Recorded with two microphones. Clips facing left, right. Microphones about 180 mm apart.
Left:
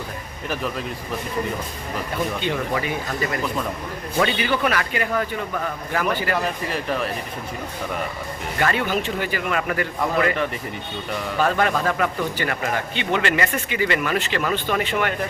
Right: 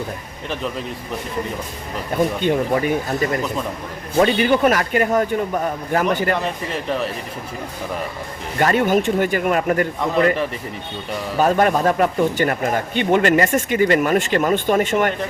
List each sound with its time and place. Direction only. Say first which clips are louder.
2.4 s a man's voice: right 6 dB; 50° right (ahead or behind)
4.2 s a man's voice: right 6 dB; 45° right (ahead or behind)
6.4 s speech: right 1 dB; centre (ahead or behind)
8.5 s a man's voice: right 6 dB; 40° right (ahead or behind)
11.3 s a man's voice: right 5 dB; 45° right (ahead or behind)